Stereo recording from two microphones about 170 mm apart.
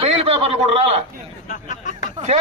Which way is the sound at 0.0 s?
35° right (ahead or behind).